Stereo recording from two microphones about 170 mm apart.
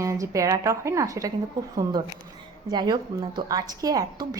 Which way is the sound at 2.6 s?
25° right (ahead or behind).